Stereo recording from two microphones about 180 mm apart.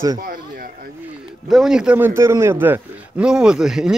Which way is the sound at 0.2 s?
50° right (ahead or behind).